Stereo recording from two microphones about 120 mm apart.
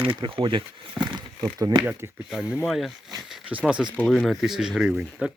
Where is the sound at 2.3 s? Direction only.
Centre (ahead or behind).